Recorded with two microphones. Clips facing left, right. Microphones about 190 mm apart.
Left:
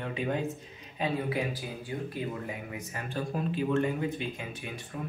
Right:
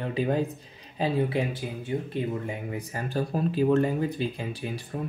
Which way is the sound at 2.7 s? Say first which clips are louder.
Right 7 dB; 35° right (ahead or behind).